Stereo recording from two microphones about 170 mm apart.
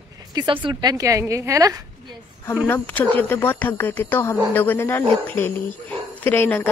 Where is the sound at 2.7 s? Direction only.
10° left (ahead or behind).